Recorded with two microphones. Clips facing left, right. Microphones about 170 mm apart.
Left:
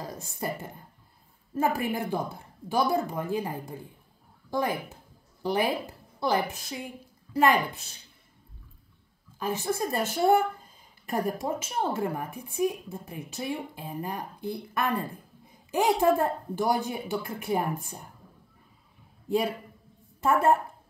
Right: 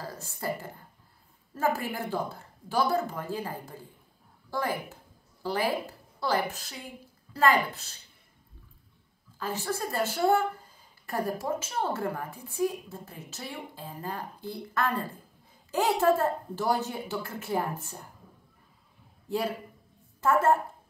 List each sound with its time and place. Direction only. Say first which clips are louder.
0.0 s a woman's voice: left 1 dB; 15° left (ahead or behind)
9.4 s speech: left 3 dB; 20° left (ahead or behind)
19.2 s a man's voice: left 3 dB; 15° left (ahead or behind)